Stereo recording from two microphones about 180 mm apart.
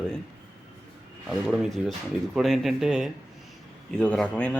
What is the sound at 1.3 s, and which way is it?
A man's voice, centre (ahead or behind).